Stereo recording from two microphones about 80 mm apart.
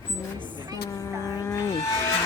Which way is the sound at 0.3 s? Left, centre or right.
Left.